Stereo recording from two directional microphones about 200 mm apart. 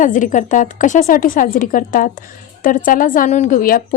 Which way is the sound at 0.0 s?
40° left (ahead or behind).